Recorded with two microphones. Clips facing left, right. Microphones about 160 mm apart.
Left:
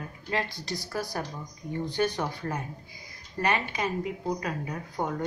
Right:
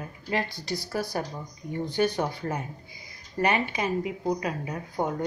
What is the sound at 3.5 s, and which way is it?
Speech, 10° right (ahead or behind).